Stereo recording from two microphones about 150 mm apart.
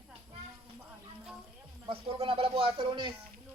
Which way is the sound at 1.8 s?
40° right (ahead or behind).